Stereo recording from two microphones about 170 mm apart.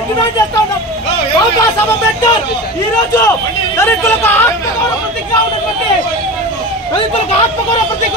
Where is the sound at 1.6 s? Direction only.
15° left (ahead or behind).